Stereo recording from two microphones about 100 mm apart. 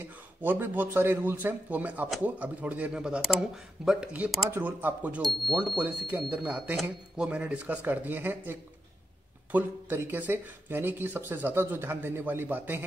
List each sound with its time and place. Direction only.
0.0 s a man's voice: 20° right (ahead or behind)